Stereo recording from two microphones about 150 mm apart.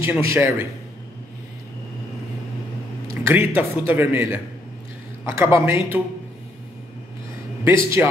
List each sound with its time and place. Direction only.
0.0 s a man's voice: 15° right (ahead or behind)
3.3 s a man's voice: 10° right (ahead or behind)
7.6 s a man's voice: 15° right (ahead or behind)